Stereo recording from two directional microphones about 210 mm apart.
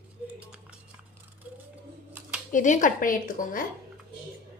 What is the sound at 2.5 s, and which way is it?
A woman's voice, 35° left (ahead or behind).